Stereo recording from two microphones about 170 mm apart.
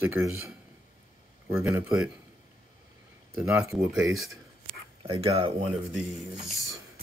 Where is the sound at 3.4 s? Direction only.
15° right (ahead or behind).